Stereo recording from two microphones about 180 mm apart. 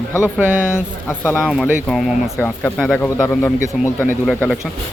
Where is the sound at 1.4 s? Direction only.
5° right (ahead or behind); by 3.9 s 10° left (ahead or behind).